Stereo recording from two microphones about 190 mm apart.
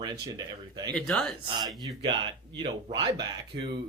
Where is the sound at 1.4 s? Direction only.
25° right (ahead or behind).